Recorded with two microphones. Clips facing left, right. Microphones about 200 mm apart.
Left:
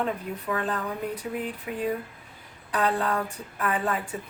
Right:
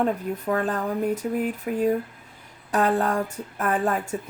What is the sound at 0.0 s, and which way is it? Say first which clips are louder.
A woman's voice: right 5 dB; 45° right (ahead or behind).